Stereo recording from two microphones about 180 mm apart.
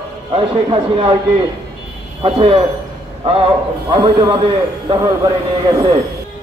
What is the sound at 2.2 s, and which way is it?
Speech, 30° right (ahead or behind).